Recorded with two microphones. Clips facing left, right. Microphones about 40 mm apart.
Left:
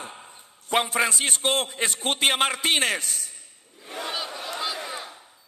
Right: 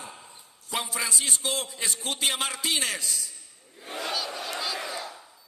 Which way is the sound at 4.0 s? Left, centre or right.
Left.